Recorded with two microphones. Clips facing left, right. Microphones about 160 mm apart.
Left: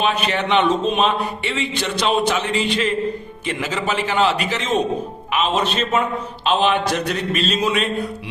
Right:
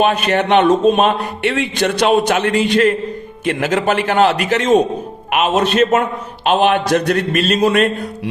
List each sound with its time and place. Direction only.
0.0 s a man's voice: 50° right (ahead or behind)